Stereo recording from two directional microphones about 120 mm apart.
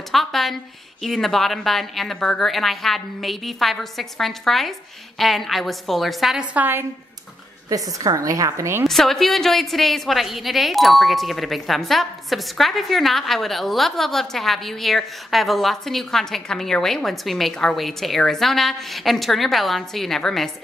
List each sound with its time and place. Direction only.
0.1 s a woman's voice: centre (ahead or behind)
6.5 s a woman's voice: 15° right (ahead or behind)
7.7 s a woman's voice: 30° right (ahead or behind)
8.8 s a woman's voice: 5° left (ahead or behind)